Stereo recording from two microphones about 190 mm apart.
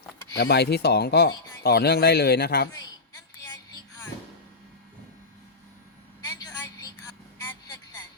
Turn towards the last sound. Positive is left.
turn(degrees=20)  # may be behind; listen again after turning